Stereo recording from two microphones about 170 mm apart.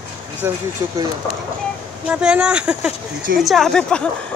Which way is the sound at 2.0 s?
5° right (ahead or behind).